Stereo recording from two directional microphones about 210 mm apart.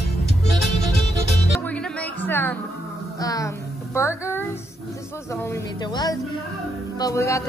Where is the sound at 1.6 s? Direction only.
5° left (ahead or behind).